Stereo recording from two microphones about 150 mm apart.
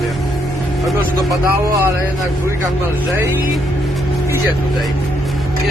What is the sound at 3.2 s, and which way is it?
Speech, 15° right (ahead or behind).